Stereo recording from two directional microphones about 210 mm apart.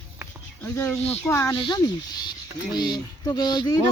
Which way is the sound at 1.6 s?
20° left (ahead or behind).